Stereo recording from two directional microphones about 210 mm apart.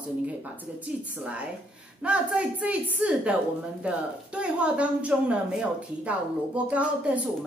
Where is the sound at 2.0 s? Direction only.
5° right (ahead or behind).